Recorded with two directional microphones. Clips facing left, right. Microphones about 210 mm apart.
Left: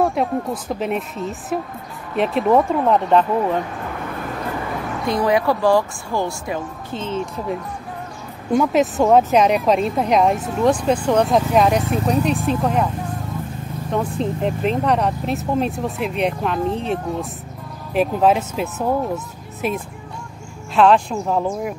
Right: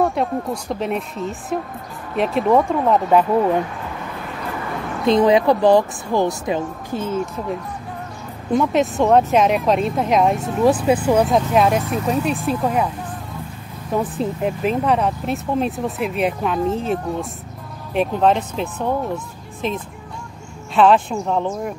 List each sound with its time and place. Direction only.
0.0 s speech: centre (ahead or behind)
5.0 s speech: 20° right (ahead or behind)
6.9 s speech: 10° right (ahead or behind)
8.5 s speech: centre (ahead or behind)
13.9 s speech: 5° right (ahead or behind)